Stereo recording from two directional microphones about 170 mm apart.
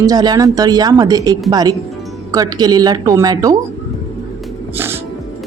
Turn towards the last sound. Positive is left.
turn(degrees=-15)  # may be behind; listen again after turning